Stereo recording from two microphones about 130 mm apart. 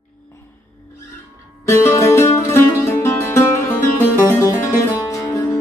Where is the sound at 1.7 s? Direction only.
20° left (ahead or behind).